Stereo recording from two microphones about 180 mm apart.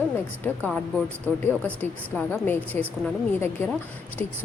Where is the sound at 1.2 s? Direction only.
10° left (ahead or behind).